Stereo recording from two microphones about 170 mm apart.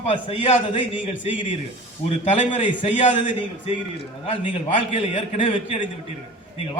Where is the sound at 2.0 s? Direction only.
40° left (ahead or behind).